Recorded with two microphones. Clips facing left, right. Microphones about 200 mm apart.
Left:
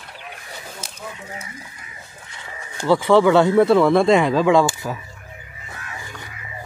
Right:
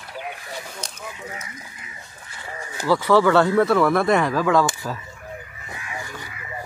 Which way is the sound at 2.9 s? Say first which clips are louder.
Left 3 dB; 25° left (ahead or behind).